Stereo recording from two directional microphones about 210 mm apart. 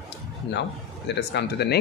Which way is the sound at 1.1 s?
55° left (ahead or behind).